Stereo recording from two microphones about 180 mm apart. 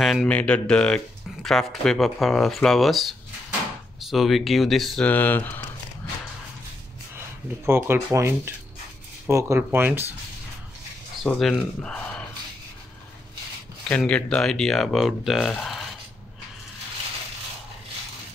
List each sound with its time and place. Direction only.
0.0 s speech: centre (ahead or behind)
7.2 s speech: 15° right (ahead or behind)
11.2 s speech: centre (ahead or behind)
13.8 s speech: 5° left (ahead or behind)